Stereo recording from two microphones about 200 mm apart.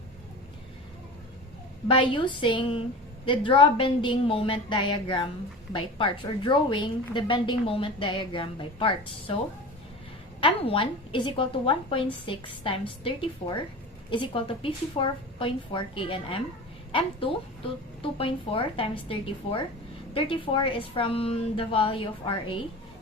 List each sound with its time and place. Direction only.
1.9 s a woman's voice: 25° left (ahead or behind)
10.4 s a woman's voice: 25° left (ahead or behind)
18.0 s a woman's voice: 25° left (ahead or behind)